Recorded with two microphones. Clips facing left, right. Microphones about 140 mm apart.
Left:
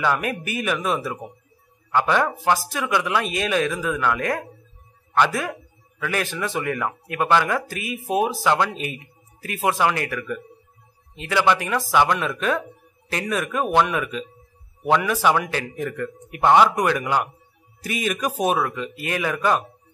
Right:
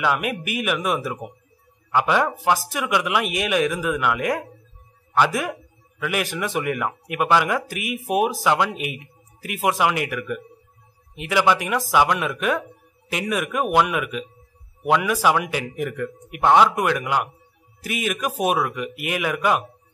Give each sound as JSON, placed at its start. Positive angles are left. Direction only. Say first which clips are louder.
{"t": 0.0, "sound": "speech", "louder": "even", "side_deg": -10}